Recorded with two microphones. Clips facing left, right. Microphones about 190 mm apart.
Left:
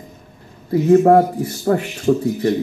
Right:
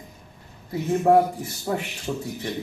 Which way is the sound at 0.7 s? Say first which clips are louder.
Left 9 dB; 60° left (ahead or behind).